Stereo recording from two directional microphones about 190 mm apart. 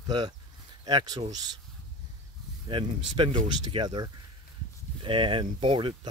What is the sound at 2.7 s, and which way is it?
Speech, 25° right (ahead or behind).